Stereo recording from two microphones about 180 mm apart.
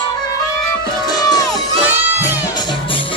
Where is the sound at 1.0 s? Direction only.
20° left (ahead or behind).